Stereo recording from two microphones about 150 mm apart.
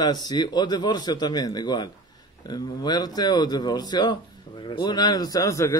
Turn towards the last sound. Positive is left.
turn(degrees=20)  # may be behind; listen again after turning